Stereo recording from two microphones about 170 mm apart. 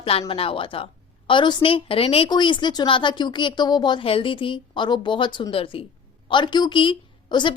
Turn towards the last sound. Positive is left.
turn(degrees=25)  # may be behind; listen again after turning